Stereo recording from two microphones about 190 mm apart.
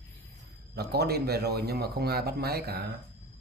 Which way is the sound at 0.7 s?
55° right (ahead or behind).